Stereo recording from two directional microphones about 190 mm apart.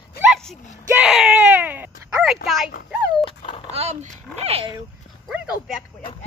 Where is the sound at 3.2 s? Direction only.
30° left (ahead or behind).